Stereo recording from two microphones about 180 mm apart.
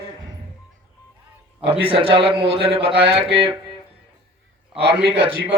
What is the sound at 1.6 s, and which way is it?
A man's voice, 30° right (ahead or behind).